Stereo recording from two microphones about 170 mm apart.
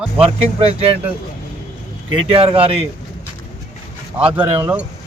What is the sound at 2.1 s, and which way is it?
Speech, 30° right (ahead or behind).